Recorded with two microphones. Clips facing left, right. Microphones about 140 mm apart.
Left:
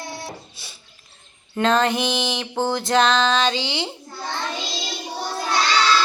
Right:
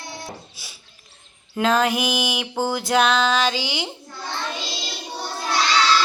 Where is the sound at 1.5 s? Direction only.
5° right (ahead or behind).